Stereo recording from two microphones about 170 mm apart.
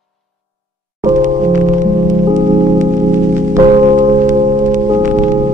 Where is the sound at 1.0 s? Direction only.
45° right (ahead or behind).